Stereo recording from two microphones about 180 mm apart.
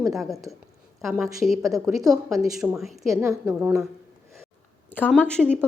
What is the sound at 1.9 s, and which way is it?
Speech, 20° right (ahead or behind).